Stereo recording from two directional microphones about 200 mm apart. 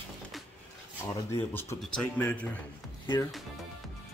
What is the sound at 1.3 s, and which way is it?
Speech, 10° left (ahead or behind).